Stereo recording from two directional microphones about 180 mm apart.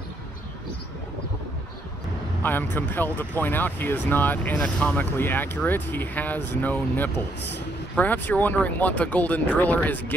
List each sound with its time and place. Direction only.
2.4 s speech: 10° left (ahead or behind)